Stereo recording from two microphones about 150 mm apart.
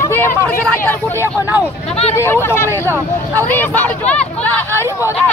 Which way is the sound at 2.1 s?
15° left (ahead or behind).